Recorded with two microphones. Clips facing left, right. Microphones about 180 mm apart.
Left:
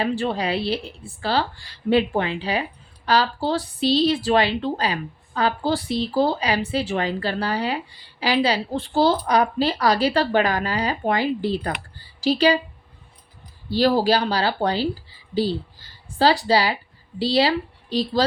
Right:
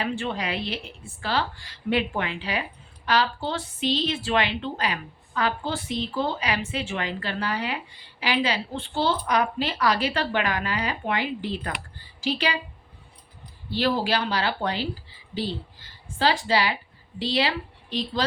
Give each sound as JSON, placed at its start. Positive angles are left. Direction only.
{"t": 0.0, "sound": "a woman's voice", "side_deg": 35}
{"t": 13.7, "sound": "a woman's voice", "side_deg": 35}